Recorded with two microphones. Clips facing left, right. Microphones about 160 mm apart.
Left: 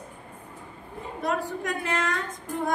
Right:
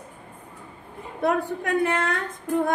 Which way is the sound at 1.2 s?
60° right (ahead or behind).